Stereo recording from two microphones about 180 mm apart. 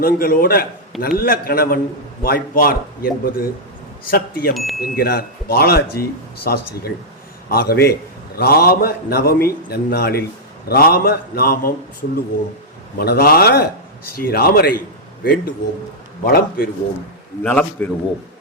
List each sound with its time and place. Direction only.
0.0 s speech: 55° left (ahead or behind)
13.0 s a man's voice: 60° left (ahead or behind)
17.4 s a man's voice: 10° left (ahead or behind)